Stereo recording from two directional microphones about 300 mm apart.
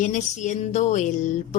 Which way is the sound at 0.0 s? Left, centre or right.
Left.